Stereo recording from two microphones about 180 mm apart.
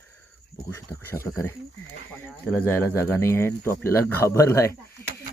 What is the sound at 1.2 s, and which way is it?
Speech, 15° left (ahead or behind).